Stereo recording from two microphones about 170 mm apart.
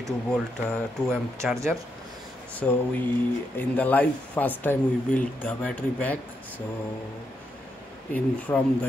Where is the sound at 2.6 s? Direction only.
5° left (ahead or behind).